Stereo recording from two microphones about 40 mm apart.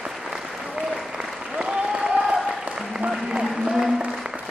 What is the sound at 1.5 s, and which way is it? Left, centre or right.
Applause, right.